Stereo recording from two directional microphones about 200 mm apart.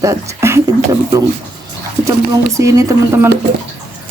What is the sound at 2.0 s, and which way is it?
Speech, 15° right (ahead or behind).